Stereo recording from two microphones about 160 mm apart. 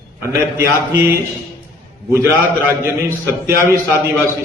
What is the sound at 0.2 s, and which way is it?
Speech, 15° right (ahead or behind).